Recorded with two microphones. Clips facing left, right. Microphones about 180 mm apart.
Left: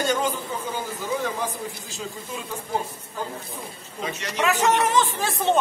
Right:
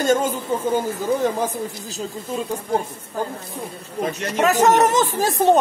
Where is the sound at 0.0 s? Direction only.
45° right (ahead or behind).